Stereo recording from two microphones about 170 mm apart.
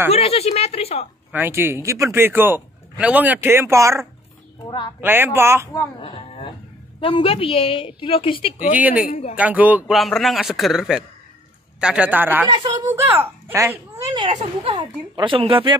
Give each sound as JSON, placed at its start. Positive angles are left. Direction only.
{"t": 0.1, "sound": "a woman's voice", "side_deg": 35}
{"t": 1.3, "sound": "a man's voice", "side_deg": -10}
{"t": 4.6, "sound": "speech", "side_deg": 25}
{"t": 5.0, "sound": "a man's voice", "side_deg": -15}
{"t": 5.9, "sound": "a woman's voice", "side_deg": 35}
{"t": 8.7, "sound": "a man's voice", "side_deg": -10}
{"t": 12.4, "sound": "speech", "side_deg": -25}
{"t": 12.9, "sound": "a man's voice", "side_deg": -15}
{"t": 14.2, "sound": "speech", "side_deg": -30}